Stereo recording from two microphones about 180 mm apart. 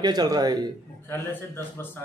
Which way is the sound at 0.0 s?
20° right (ahead or behind).